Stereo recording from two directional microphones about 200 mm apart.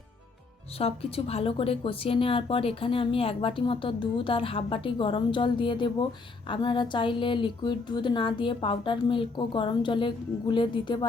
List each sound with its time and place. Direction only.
0.8 s a woman's voice: 30° left (ahead or behind)